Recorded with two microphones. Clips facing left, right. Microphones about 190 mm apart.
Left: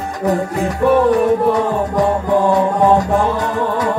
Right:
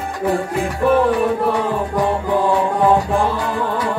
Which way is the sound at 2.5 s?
40° left (ahead or behind).